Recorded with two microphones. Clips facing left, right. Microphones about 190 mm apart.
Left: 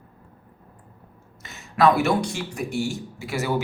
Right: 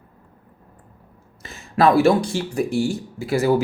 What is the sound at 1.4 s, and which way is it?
Speech, 30° right (ahead or behind).